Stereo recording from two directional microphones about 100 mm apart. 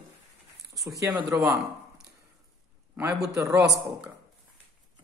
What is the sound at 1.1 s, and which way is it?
Speech, 15° right (ahead or behind).